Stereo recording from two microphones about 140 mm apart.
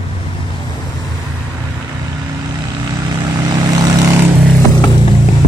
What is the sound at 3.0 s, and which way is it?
Vehicle, 30° right (ahead or behind).